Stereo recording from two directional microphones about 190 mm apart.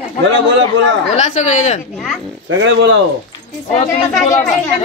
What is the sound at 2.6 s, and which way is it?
Speech, 80° right.